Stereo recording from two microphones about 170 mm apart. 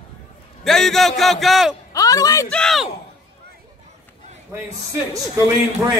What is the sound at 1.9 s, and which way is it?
Speech, 20° left (ahead or behind).